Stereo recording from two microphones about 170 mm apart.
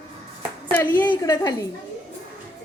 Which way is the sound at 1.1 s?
25° left (ahead or behind).